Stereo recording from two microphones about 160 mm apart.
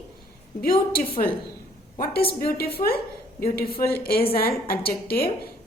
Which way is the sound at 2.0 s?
70° left (ahead or behind).